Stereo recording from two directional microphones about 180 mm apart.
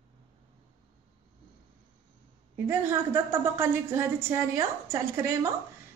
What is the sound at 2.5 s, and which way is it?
A woman's voice, 10° right (ahead or behind).